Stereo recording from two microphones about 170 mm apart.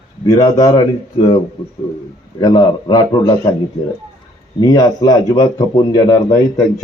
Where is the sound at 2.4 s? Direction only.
25° left (ahead or behind).